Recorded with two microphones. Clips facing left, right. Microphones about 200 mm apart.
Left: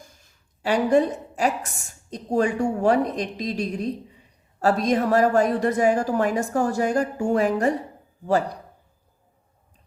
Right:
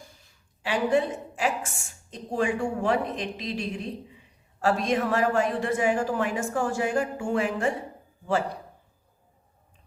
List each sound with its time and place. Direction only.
0.6 s a woman's voice: 40° left (ahead or behind)